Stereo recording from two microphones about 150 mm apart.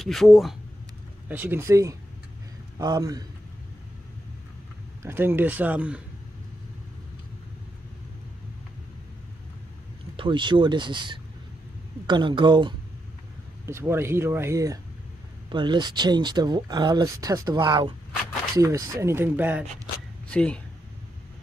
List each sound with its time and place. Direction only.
0.0 s speech: centre (ahead or behind)
1.3 s speech: 15° right (ahead or behind)
5.0 s speech: 15° right (ahead or behind)
10.1 s speech: 35° right (ahead or behind)
13.7 s speech: 15° right (ahead or behind); by 17.9 s 35° right (ahead or behind)
18.6 s speech: 20° right (ahead or behind)
20.2 s speech: 5° left (ahead or behind)